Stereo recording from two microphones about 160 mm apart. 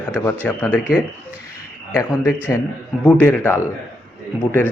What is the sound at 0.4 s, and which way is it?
Speech, 10° left (ahead or behind).